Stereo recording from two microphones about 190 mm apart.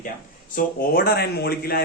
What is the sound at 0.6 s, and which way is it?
A man's voice, 55° left (ahead or behind).